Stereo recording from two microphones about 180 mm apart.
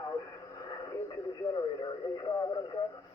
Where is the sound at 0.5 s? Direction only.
20° left (ahead or behind).